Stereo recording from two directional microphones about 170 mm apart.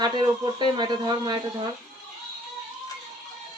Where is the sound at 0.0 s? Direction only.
25° right (ahead or behind).